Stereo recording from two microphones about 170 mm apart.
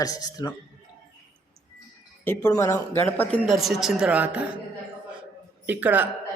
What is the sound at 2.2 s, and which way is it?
Speech, 15° left (ahead or behind).